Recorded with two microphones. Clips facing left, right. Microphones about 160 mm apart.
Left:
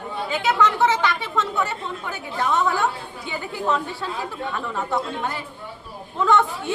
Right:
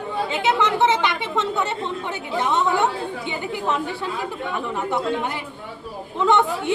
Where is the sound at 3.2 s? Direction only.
20° right (ahead or behind).